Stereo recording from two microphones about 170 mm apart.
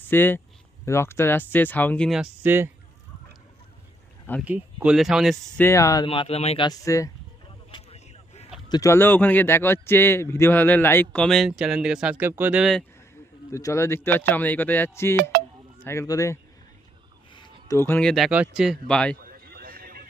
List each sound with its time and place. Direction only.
0.1 s a man's voice: 10° left (ahead or behind)
2.4 s speech: 15° right (ahead or behind)
4.4 s speech: 10° right (ahead or behind)
5.5 s a man's voice: 15° left (ahead or behind)
6.1 s speech: 35° left (ahead or behind)
6.7 s speech: 20° left (ahead or behind)
7.7 s vehicle: 35° left (ahead or behind)
8.7 s a man's voice: 15° left (ahead or behind); by 12.8 s 5° right (ahead or behind)
13.5 s a man's voice: 20° left (ahead or behind)
15.1 s speech: 60° right (ahead or behind)
15.8 s a man's voice: 15° left (ahead or behind)
17.3 s a sound: 25° left (ahead or behind)
17.7 s speech: 10° left (ahead or behind)
19.1 s a sound: 60° right (ahead or behind)